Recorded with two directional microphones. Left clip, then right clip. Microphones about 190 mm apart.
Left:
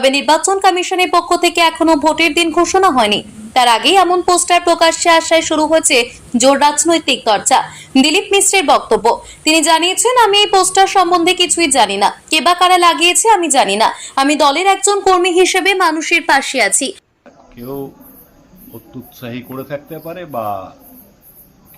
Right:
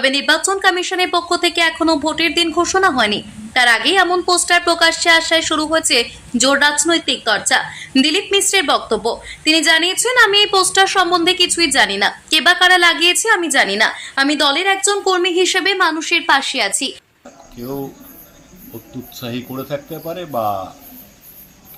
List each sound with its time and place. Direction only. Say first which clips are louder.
0.0 s a woman's voice: left 3 dB; 15° left (ahead or behind)
19.2 s speech: even; 5° right (ahead or behind)